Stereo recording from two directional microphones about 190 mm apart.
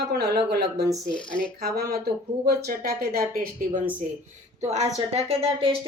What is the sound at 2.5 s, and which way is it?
Speech, 55° right (ahead or behind).